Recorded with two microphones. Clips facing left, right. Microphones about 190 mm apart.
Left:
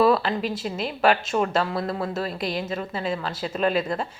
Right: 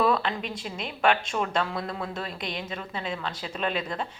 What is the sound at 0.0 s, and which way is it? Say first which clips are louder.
A woman's voice: left 5 dB; 5° left (ahead or behind).